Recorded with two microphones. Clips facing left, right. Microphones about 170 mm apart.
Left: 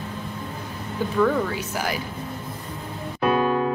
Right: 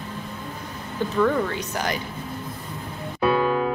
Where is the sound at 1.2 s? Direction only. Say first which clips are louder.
Even; 5° left (ahead or behind).